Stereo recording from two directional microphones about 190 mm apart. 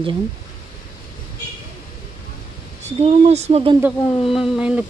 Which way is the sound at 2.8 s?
35° right (ahead or behind).